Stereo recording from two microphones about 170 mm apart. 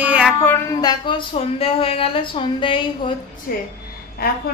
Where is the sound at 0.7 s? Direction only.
25° left (ahead or behind).